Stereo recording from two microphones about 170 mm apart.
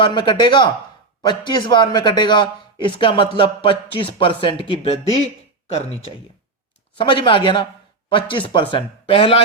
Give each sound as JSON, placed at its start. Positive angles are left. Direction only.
{"t": 0.0, "sound": "a man's voice", "side_deg": 25}